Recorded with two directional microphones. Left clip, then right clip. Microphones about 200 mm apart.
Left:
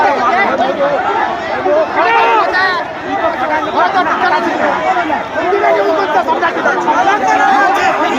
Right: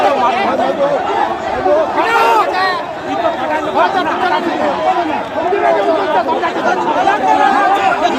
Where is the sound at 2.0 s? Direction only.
25° right (ahead or behind).